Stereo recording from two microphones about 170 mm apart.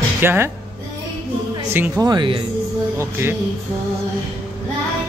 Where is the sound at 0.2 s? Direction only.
15° right (ahead or behind).